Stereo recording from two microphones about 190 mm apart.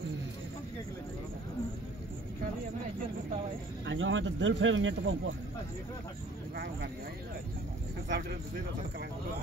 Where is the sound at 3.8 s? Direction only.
80° right.